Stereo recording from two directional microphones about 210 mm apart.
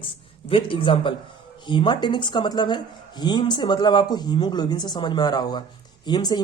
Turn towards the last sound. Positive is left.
turn(degrees=20)  # may be behind; listen again after turning